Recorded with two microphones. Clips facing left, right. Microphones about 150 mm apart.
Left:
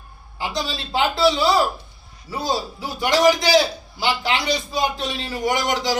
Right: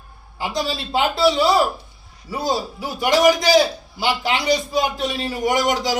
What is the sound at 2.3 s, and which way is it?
Speech, 20° right (ahead or behind).